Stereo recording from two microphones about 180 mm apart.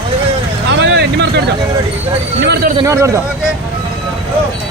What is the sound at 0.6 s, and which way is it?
Vehicle, 75° right (ahead or behind).